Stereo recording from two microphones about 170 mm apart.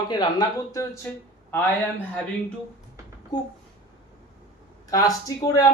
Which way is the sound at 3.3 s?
25° left (ahead or behind).